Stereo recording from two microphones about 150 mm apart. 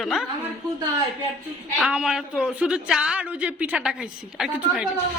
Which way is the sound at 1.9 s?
5° right (ahead or behind).